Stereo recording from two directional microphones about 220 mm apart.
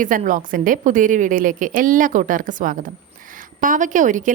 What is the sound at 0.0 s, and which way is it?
A woman's voice, 35° right (ahead or behind).